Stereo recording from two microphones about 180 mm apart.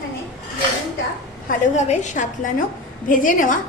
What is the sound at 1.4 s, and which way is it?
A woman's voice, 40° left (ahead or behind).